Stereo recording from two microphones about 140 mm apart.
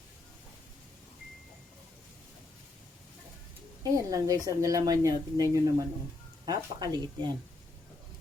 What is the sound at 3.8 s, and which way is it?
Speech, 25° right (ahead or behind).